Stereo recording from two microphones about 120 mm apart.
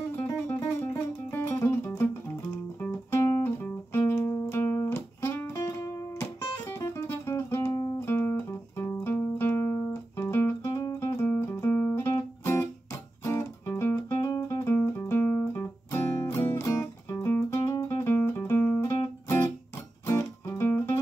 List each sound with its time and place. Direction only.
0.1 s music: 15° left (ahead or behind)
4.0 s music: 25° left (ahead or behind)
8.0 s guitar: 20° left (ahead or behind)
13.2 s music: 25° left (ahead or behind)